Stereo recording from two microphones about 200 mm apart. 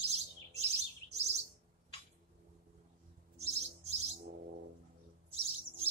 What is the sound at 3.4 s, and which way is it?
Bird, 35° right (ahead or behind).